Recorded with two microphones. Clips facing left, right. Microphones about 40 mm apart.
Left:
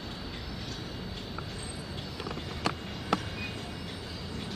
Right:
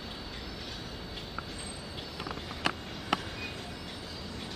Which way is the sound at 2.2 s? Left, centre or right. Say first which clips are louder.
Even; centre.